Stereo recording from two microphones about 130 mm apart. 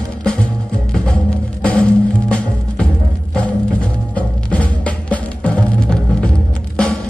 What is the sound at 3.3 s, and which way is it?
Music, 10° left (ahead or behind).